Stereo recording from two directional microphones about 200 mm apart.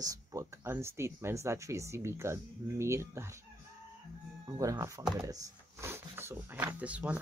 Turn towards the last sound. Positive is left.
turn(degrees=-5)  # may be behind; listen again after turning